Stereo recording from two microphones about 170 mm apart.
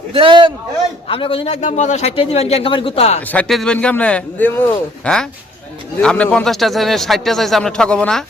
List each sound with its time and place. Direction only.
0.1 s a man's voice: 30° right (ahead or behind)
1.0 s a man's voice: 30° left (ahead or behind)
3.2 s a man's voice: 10° left (ahead or behind)